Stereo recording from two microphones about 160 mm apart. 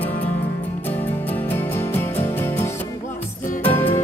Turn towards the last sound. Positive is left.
turn(degrees=15)  # may be behind; listen again after turning